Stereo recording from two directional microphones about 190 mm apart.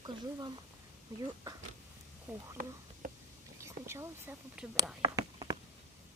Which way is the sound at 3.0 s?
45° right (ahead or behind).